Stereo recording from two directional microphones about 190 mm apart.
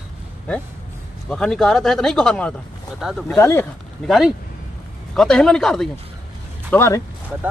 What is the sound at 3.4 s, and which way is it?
Speech, 10° left (ahead or behind).